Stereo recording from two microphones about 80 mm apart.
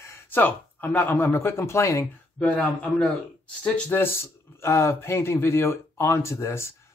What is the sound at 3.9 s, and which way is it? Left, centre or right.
Speech, left.